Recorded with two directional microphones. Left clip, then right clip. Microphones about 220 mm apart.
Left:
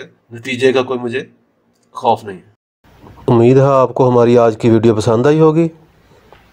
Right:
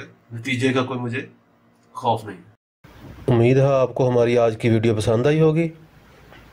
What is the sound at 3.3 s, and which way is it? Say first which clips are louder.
Speech: left 8 dB; 20° left (ahead or behind).